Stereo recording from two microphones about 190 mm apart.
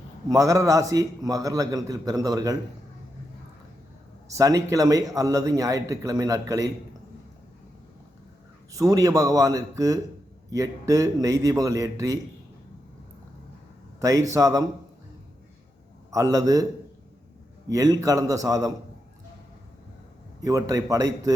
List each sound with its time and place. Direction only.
0.3 s a man's voice: 15° right (ahead or behind)
4.3 s a man's voice: 15° right (ahead or behind)
8.7 s a man's voice: 20° right (ahead or behind)
14.0 s a man's voice: 15° right (ahead or behind)
16.1 s a man's voice: 20° right (ahead or behind)
17.7 s a man's voice: 20° right (ahead or behind)
20.4 s a man's voice: 20° right (ahead or behind)